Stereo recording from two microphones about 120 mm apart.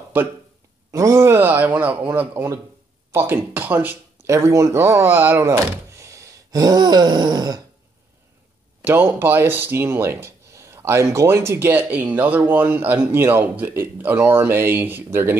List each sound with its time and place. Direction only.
0.9 s speech: 25° right (ahead or behind)
5.7 s wail: 25° right (ahead or behind)
8.8 s speech: 20° right (ahead or behind)